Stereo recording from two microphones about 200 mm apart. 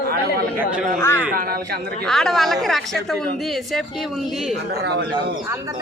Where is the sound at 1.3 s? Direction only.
45° right (ahead or behind).